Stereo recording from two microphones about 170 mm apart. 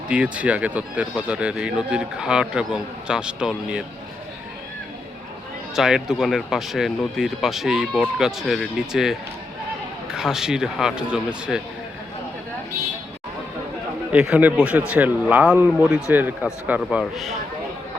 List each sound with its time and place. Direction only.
0.1 s speech: 5° right (ahead or behind)
5.7 s speech: 5° right (ahead or behind)
14.1 s speech: 5° right (ahead or behind)